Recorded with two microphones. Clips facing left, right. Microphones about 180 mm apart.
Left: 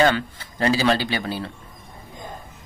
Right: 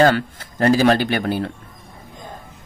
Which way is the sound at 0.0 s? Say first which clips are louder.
Right 4 dB; 50° right (ahead or behind).